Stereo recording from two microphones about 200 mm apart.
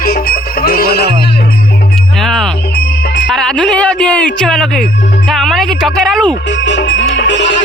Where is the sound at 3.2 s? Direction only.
Centre (ahead or behind).